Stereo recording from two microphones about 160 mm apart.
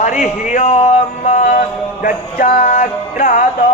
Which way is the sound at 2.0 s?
65° left (ahead or behind).